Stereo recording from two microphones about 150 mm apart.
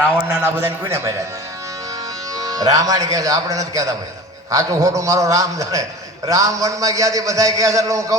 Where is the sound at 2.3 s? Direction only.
25° right (ahead or behind).